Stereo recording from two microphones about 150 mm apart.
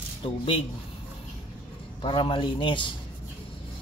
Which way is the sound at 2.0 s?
35° left (ahead or behind).